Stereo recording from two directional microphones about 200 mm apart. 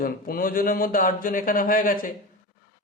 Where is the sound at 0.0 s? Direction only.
45° left (ahead or behind).